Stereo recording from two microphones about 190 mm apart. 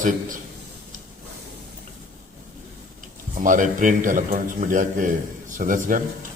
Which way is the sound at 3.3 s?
45° right (ahead or behind).